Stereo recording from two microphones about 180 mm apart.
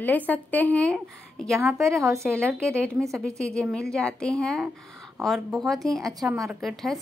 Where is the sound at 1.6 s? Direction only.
15° right (ahead or behind).